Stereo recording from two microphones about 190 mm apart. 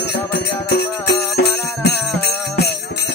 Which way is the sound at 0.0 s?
60° left (ahead or behind).